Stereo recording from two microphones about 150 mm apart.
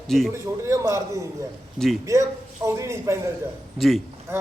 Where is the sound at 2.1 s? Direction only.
20° right (ahead or behind).